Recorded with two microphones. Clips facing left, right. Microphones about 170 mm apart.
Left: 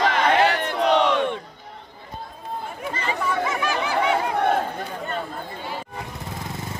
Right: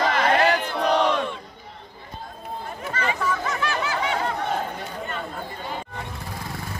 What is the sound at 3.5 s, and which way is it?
Snicker, 10° left (ahead or behind).